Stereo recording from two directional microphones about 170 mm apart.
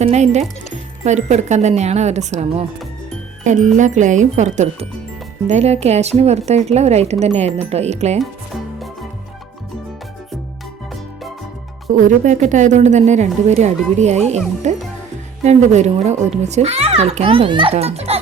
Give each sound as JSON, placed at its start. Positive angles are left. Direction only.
{"t": 0.0, "sound": "a woman's voice", "side_deg": -40}
{"t": 8.2, "sound": "music", "side_deg": 0}
{"t": 11.9, "sound": "a woman's voice", "side_deg": -50}